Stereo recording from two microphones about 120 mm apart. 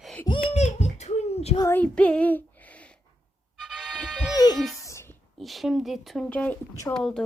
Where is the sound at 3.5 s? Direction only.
5° right (ahead or behind).